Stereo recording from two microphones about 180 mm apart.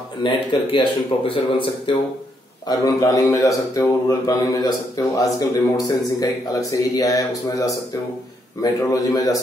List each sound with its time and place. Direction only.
0.2 s a man's voice: 30° left (ahead or behind)
8.9 s a man's voice: 20° left (ahead or behind)